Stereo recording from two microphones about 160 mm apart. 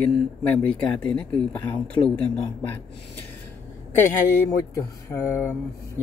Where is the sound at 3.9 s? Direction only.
15° left (ahead or behind).